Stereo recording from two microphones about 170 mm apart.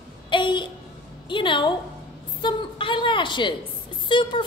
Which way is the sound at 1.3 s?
30° left (ahead or behind).